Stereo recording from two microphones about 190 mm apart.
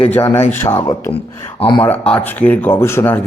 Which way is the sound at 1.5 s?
25° left (ahead or behind).